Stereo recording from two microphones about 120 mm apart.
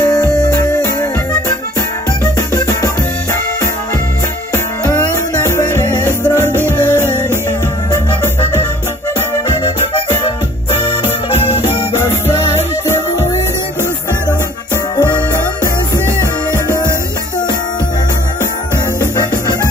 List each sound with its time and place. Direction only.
0.0 s music: 25° left (ahead or behind)
2.3 s music: 25° left (ahead or behind)
11.1 s music: 65° left (ahead or behind)
12.0 s music: 20° left (ahead or behind)
15.0 s music: 20° left (ahead or behind)
18.9 s music: 25° left (ahead or behind)